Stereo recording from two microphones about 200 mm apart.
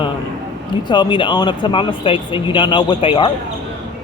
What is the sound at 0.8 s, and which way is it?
Speech, 25° left (ahead or behind).